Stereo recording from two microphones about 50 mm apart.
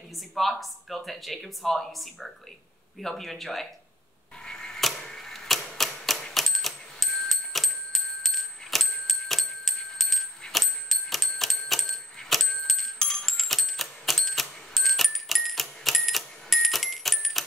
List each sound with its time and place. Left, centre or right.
0.3 s speech: centre
4.5 s typewriter: centre
6.3 s music: centre